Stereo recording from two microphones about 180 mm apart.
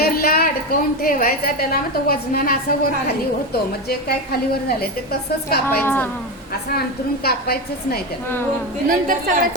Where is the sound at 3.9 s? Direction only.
60° left (ahead or behind).